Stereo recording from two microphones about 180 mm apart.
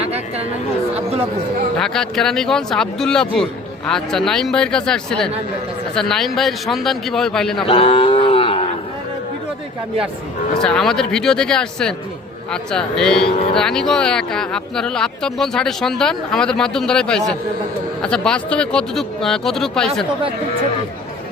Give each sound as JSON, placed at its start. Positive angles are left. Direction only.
{"t": 0.0, "sound": "chatter", "side_deg": -35}
{"t": 1.8, "sound": "speech", "side_deg": 5}
{"t": 7.7, "sound": "cattle", "side_deg": 30}
{"t": 10.6, "sound": "speech", "side_deg": 5}
{"t": 13.3, "sound": "speech", "side_deg": 35}
{"t": 13.6, "sound": "speech", "side_deg": 5}